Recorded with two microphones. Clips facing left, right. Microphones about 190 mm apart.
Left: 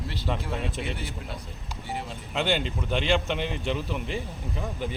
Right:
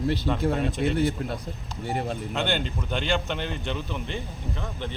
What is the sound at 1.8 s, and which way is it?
Speech, 55° right (ahead or behind).